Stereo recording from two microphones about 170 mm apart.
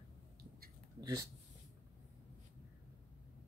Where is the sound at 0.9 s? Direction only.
20° right (ahead or behind).